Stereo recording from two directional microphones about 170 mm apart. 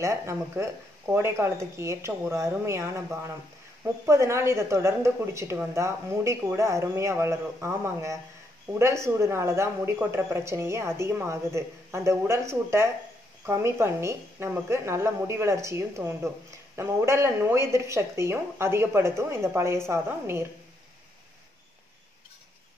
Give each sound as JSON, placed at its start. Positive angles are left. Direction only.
{"t": 0.0, "sound": "a woman's voice", "side_deg": -15}